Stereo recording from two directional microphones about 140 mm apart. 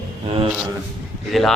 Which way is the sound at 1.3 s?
Centre (ahead or behind).